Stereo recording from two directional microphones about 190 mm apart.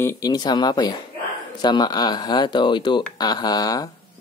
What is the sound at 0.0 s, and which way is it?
Speech, 20° left (ahead or behind).